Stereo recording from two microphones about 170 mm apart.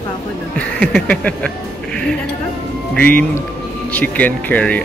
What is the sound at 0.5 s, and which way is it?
Speech, 5° left (ahead or behind).